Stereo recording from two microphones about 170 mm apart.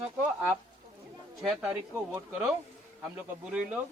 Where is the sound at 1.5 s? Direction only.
5° right (ahead or behind).